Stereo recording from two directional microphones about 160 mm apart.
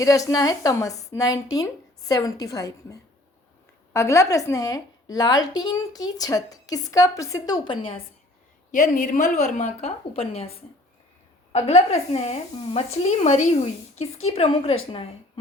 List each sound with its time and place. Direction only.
0.0 s a woman's voice: 20° left (ahead or behind)
8.7 s a woman's voice: 60° left (ahead or behind); by 10.5 s 40° left (ahead or behind)
11.5 s speech: 40° left (ahead or behind)